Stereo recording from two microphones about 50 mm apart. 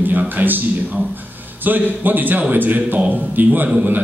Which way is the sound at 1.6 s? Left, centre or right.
Right.